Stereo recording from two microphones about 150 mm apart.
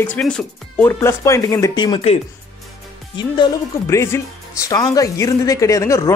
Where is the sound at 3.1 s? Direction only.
30° left (ahead or behind).